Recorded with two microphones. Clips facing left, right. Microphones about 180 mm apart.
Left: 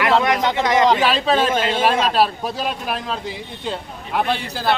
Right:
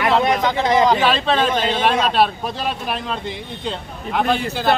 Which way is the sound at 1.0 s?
5° left (ahead or behind).